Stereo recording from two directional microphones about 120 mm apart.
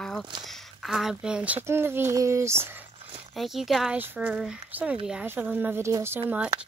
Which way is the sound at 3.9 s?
15° right (ahead or behind).